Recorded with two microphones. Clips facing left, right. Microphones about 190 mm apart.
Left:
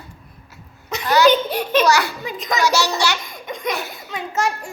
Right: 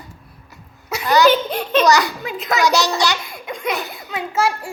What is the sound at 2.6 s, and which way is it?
Speech, 15° right (ahead or behind).